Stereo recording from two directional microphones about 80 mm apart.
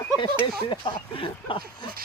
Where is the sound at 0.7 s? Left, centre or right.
Left.